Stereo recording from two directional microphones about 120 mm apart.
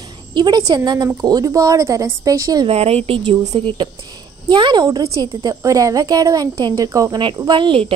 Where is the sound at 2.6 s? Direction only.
60° right (ahead or behind); by 7.2 s 30° right (ahead or behind).